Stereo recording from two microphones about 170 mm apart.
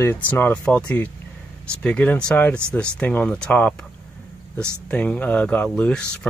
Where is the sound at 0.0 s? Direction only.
10° left (ahead or behind).